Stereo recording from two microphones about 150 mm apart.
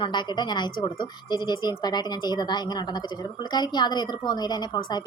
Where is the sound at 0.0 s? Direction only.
30° left (ahead or behind).